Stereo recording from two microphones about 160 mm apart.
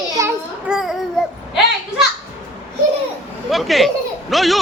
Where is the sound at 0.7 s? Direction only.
Centre (ahead or behind).